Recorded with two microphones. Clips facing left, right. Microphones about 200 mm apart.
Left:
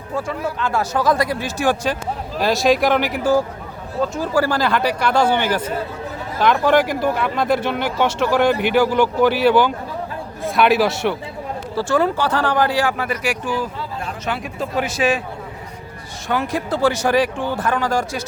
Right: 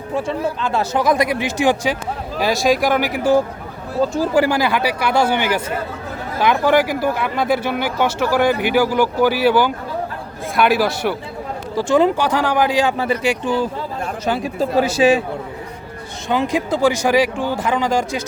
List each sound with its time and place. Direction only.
0.1 s speech: 20° right (ahead or behind)
2.4 s speech: centre (ahead or behind)
11.7 s speech: 15° right (ahead or behind)
13.0 s speech: 25° right (ahead or behind)
14.3 s speech: 35° right (ahead or behind)
16.3 s speech: 15° right (ahead or behind)